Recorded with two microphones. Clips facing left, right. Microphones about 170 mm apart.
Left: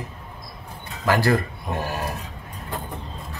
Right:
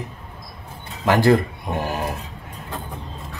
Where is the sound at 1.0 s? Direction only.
20° right (ahead or behind).